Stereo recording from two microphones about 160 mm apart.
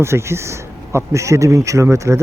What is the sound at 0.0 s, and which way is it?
Speech, 15° right (ahead or behind).